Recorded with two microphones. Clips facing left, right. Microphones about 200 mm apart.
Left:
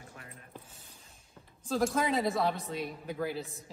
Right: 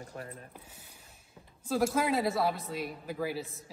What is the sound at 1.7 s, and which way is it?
Speech, 5° right (ahead or behind).